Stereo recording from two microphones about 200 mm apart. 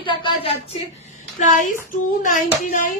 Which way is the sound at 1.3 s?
40° left (ahead or behind).